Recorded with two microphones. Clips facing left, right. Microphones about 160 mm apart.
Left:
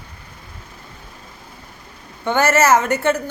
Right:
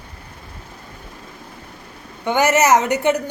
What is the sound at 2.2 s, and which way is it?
Speech, 15° right (ahead or behind).